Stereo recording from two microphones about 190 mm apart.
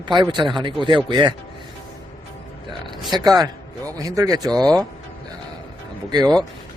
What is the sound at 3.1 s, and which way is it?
Speech, 20° right (ahead or behind).